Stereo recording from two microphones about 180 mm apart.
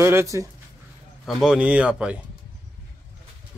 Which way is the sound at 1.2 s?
Centre (ahead or behind).